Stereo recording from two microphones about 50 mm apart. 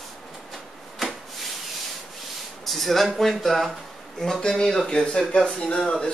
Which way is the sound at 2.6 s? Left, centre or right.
Centre.